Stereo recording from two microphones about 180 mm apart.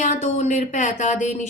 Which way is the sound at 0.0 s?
40° left (ahead or behind).